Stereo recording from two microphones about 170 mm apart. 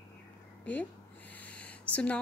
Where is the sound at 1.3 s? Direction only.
10° left (ahead or behind).